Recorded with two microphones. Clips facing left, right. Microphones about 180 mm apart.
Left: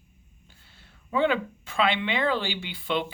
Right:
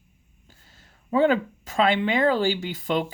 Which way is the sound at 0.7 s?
40° right (ahead or behind).